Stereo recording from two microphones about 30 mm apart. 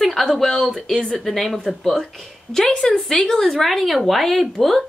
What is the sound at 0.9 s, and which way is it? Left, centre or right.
Speech, left.